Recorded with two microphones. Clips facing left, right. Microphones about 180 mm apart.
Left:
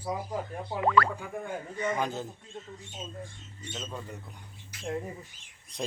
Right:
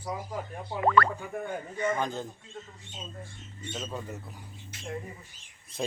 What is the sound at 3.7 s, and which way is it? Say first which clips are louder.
Speech: right 2 dB; 5° right (ahead or behind).